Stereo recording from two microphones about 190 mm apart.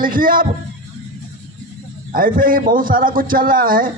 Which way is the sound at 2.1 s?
45° right (ahead or behind).